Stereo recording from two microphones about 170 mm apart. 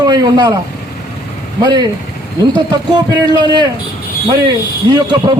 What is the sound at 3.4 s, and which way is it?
Speech, 25° right (ahead or behind).